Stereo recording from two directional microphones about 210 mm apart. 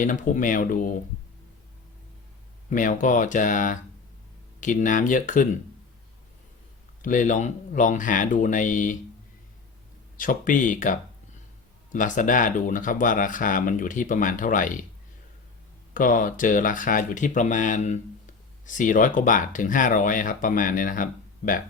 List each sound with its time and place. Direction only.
0.0 s speech: 40° left (ahead or behind)
2.6 s speech: 40° left (ahead or behind)
7.0 s speech: 40° left (ahead or behind)
10.2 s speech: 40° left (ahead or behind)
16.0 s speech: 40° left (ahead or behind)